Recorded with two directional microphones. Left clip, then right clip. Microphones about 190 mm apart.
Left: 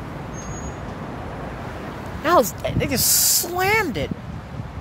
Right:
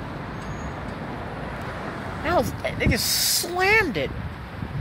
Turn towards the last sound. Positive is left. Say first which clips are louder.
# even
turn(degrees=0)  # may be behind; listen again after turning